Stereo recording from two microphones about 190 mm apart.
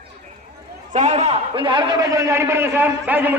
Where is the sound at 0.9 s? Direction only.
40° right (ahead or behind).